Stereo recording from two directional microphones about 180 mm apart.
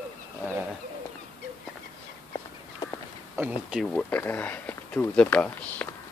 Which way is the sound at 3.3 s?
5° right (ahead or behind).